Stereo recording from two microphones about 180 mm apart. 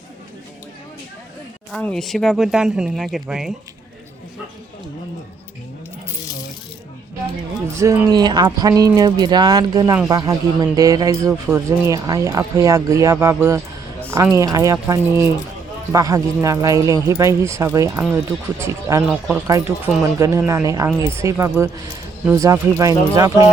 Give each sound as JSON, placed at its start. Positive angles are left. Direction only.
{"t": 1.7, "sound": "speech", "side_deg": 5}
{"t": 7.8, "sound": "speech", "side_deg": -15}
{"t": 19.0, "sound": "speech", "side_deg": -5}
{"t": 19.5, "sound": "speech", "side_deg": -15}